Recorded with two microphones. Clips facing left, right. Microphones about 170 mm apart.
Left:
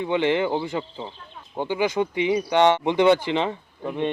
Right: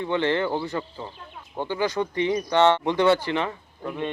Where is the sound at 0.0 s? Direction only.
15° left (ahead or behind).